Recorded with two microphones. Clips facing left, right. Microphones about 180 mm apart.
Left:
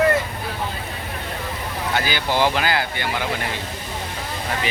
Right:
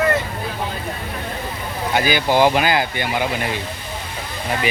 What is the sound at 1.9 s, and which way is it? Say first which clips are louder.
Speech: right 5 dB; 15° right (ahead or behind).